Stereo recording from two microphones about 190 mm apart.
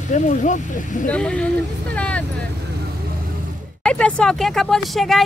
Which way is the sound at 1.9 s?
5° left (ahead or behind).